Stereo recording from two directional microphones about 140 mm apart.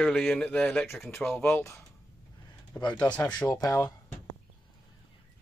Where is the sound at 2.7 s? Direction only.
15° left (ahead or behind).